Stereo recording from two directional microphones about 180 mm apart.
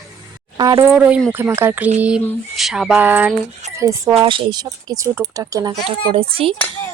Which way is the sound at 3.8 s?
15° right (ahead or behind).